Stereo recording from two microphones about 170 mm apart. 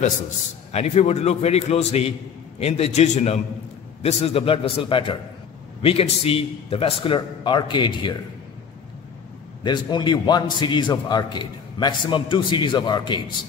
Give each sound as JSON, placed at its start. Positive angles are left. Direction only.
{"t": 0.7, "sound": "a man's voice", "side_deg": 40}
{"t": 9.6, "sound": "a man's voice", "side_deg": 25}